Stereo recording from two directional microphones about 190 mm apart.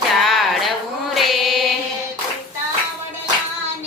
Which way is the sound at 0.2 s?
Centre (ahead or behind).